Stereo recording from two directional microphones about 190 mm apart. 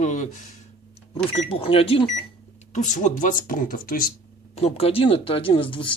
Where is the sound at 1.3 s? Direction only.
30° left (ahead or behind).